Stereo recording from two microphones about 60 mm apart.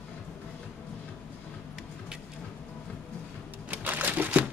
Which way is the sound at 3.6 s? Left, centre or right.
Right.